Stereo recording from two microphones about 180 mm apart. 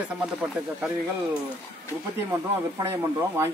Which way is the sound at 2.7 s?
15° right (ahead or behind).